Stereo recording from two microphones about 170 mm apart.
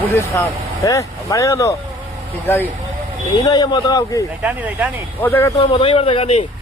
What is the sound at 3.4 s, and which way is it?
Speech, 25° left (ahead or behind).